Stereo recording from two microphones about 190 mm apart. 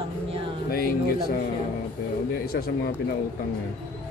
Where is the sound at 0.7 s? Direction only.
55° left (ahead or behind).